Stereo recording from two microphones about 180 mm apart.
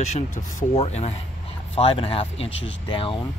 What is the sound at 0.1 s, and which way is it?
Speech, 45° left (ahead or behind).